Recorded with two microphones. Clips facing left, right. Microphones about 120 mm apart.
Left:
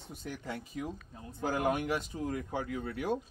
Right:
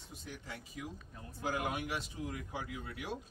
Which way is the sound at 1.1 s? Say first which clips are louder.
Left 4 dB; 25° left (ahead or behind).